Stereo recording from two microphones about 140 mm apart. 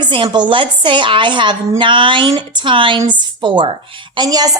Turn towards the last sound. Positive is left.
turn(degrees=-25)  # may be behind; listen again after turning